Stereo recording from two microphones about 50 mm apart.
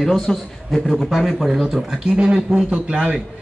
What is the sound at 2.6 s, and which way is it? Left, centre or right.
Speech, right.